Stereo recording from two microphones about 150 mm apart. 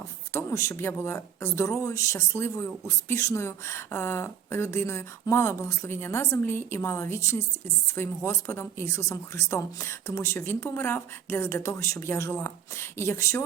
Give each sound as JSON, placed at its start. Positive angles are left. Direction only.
{"t": 0.3, "sound": "speech", "side_deg": 20}